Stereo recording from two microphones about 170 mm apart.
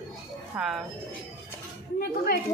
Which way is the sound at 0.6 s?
Centre (ahead or behind).